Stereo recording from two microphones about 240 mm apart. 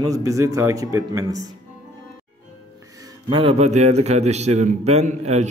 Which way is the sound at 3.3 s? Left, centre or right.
Right.